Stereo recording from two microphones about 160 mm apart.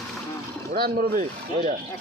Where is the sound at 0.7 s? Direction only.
70° right (ahead or behind); by 1.8 s 50° right (ahead or behind).